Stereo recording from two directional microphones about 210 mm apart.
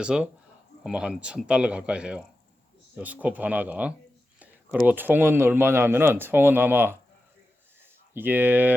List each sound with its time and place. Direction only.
0.0 s speech: 5° right (ahead or behind)
8.1 s speech: 10° right (ahead or behind)